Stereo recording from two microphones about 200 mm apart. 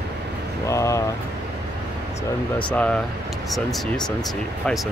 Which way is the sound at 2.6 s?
5° left (ahead or behind).